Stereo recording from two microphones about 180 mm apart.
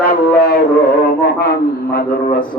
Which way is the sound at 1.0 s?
65° left (ahead or behind).